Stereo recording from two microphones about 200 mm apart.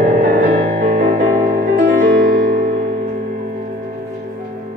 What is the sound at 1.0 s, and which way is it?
Music, 40° right (ahead or behind).